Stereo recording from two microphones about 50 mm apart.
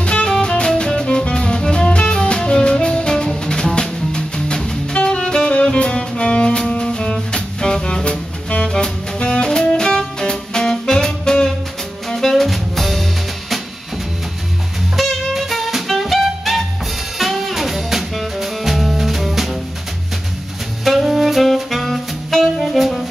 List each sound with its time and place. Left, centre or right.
0.0 s music: centre
15.0 s music: centre
20.8 s saxophone: centre